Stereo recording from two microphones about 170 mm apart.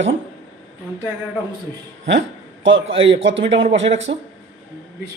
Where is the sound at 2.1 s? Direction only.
90° right.